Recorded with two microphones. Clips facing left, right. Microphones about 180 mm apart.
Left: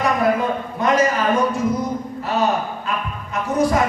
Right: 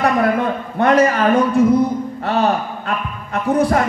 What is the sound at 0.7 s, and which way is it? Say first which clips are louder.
Speech: right 5 dB; 60° right (ahead or behind).